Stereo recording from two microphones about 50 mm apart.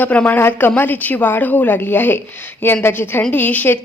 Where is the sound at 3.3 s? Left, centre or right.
Left.